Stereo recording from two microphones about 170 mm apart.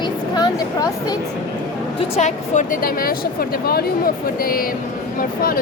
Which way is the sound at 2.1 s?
45° left (ahead or behind).